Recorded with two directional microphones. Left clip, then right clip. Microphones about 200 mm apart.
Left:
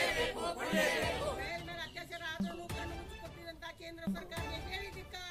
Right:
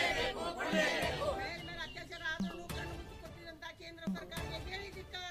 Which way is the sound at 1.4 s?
5° right (ahead or behind).